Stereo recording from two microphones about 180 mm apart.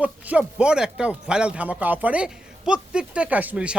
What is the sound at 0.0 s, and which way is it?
A man's voice, 5° right (ahead or behind).